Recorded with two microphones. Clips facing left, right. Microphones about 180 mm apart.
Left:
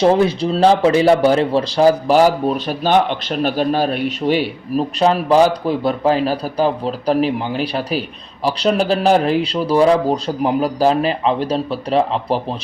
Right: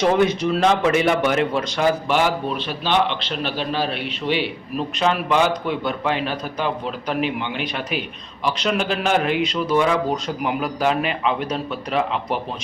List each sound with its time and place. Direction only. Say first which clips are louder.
0.0 s a man's voice: left 4 dB; 30° left (ahead or behind)